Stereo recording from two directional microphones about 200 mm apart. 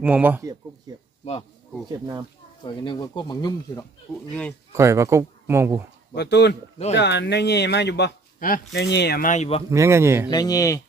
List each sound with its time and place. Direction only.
0.0 s speech: 10° right (ahead or behind)
0.9 s a sound: 20° right (ahead or behind)
1.2 s speech: 30° left (ahead or behind)
1.9 s speech: 20° right (ahead or behind)
2.6 s speech: 25° left (ahead or behind)
4.7 s speech: 15° right (ahead or behind)
6.1 s speech: 60° left (ahead or behind)
8.4 s speech: 45° left (ahead or behind)
8.7 s speech: 60° left (ahead or behind); by 9.6 s 30° left (ahead or behind)
9.6 s speech: 15° right (ahead or behind)
10.2 s speech: 20° left (ahead or behind)